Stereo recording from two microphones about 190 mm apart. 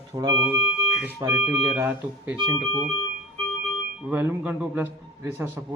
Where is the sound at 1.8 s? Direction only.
10° right (ahead or behind).